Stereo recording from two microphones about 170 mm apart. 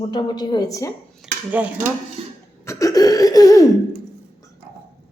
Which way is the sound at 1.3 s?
5° right (ahead or behind).